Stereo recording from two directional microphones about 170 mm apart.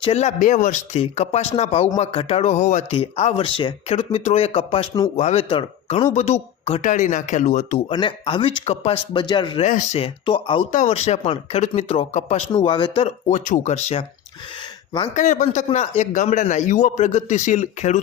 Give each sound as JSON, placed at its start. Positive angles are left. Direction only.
{"t": 0.0, "sound": "speech", "side_deg": 40}
{"t": 6.1, "sound": "speech", "side_deg": 40}
{"t": 6.8, "sound": "a man's voice", "side_deg": 45}
{"t": 7.9, "sound": "speech", "side_deg": 30}
{"t": 9.6, "sound": "a man's voice", "side_deg": 45}
{"t": 10.2, "sound": "speech", "side_deg": 30}
{"t": 10.7, "sound": "speech", "side_deg": 45}
{"t": 12.5, "sound": "speech", "side_deg": 30}
{"t": 15.1, "sound": "a man's voice", "side_deg": 45}